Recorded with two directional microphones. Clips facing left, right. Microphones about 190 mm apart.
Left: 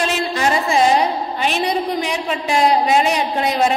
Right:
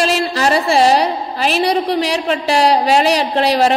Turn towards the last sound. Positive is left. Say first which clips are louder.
# right 4 dB
turn(degrees=-75)  # may be behind; listen again after turning